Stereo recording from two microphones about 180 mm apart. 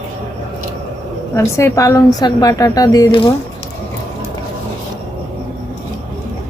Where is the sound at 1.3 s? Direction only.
15° left (ahead or behind).